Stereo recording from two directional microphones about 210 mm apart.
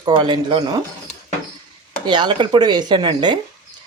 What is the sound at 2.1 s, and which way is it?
Speech, 20° right (ahead or behind).